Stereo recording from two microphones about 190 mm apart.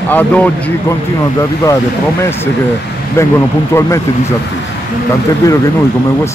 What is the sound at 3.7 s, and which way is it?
Speech, 15° left (ahead or behind).